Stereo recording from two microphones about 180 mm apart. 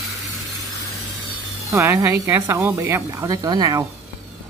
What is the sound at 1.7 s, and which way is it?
Speech, 15° right (ahead or behind).